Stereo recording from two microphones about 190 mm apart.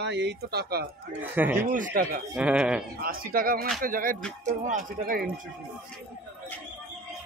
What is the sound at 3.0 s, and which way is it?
Speech, 50° right (ahead or behind).